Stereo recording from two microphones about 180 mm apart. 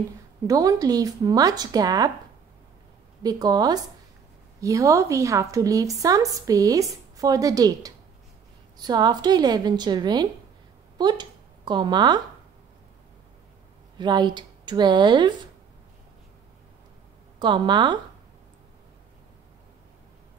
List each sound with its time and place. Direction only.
0.5 s a woman's voice: 20° right (ahead or behind)
3.2 s a woman's voice: 20° right (ahead or behind)
13.9 s a woman's voice: 25° right (ahead or behind)
17.4 s a woman's voice: 25° right (ahead or behind)